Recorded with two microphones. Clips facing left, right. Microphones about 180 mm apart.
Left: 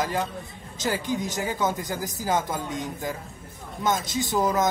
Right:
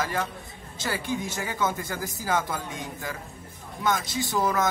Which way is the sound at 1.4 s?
15° left (ahead or behind).